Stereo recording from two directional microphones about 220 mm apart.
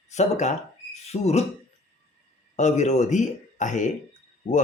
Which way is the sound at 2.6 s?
30° left (ahead or behind).